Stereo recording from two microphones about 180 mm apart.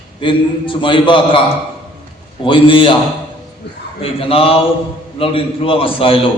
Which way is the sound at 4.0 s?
30° left (ahead or behind).